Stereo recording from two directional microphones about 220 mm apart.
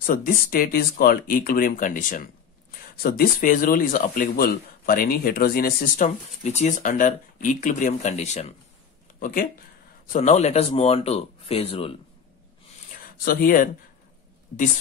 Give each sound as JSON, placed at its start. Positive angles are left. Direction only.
{"t": 0.0, "sound": "speech", "side_deg": 40}
{"t": 9.2, "sound": "speech", "side_deg": 40}
{"t": 13.2, "sound": "speech", "side_deg": 45}